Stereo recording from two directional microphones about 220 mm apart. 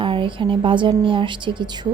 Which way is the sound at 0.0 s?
20° right (ahead or behind).